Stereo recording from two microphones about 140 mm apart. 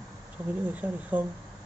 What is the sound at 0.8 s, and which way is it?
Speech, 10° right (ahead or behind).